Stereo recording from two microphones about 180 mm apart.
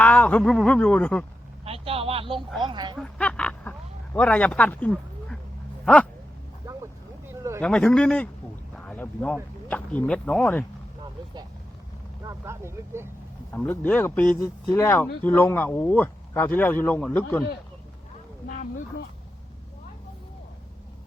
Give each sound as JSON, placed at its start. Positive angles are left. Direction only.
{"t": 0.0, "sound": "speech", "side_deg": 5}
{"t": 1.6, "sound": "a sound", "side_deg": -30}
{"t": 2.6, "sound": "speech", "side_deg": -25}
{"t": 3.0, "sound": "a sound", "side_deg": 5}
{"t": 5.8, "sound": "dog", "side_deg": 5}
{"t": 7.6, "sound": "a man's voice", "side_deg": 5}
{"t": 12.2, "sound": "speech", "side_deg": -15}
{"t": 13.5, "sound": "speech", "side_deg": 10}
{"t": 18.4, "sound": "speech", "side_deg": 45}